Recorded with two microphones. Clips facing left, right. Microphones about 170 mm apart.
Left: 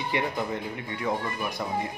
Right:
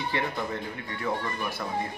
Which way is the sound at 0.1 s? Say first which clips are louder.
Left 2 dB; 15° left (ahead or behind).